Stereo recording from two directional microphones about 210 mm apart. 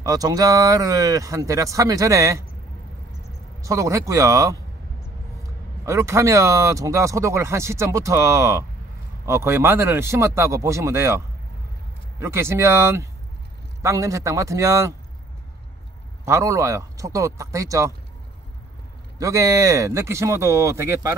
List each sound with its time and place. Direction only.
0.0 s speech: 15° right (ahead or behind)
3.6 s speech: 15° right (ahead or behind)
5.9 s speech: 15° right (ahead or behind)
16.3 s speech: 15° right (ahead or behind)
19.1 s speech: 15° right (ahead or behind)